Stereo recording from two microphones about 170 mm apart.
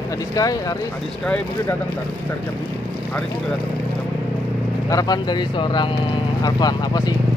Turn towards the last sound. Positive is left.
turn(degrees=25)  # may be behind; listen again after turning